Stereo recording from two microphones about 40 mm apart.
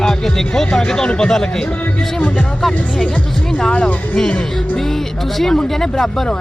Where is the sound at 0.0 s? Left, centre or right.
Centre.